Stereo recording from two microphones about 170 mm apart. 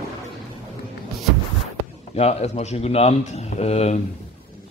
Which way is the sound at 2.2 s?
40° left (ahead or behind).